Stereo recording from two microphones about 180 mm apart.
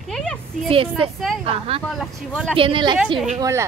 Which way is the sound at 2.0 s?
Centre (ahead or behind).